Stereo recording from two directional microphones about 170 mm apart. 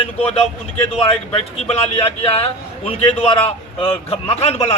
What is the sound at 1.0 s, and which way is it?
Speech, 35° left (ahead or behind).